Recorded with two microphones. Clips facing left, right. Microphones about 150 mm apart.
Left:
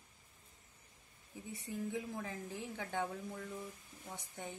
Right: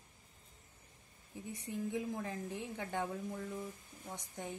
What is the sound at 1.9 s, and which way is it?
A woman's voice, centre (ahead or behind).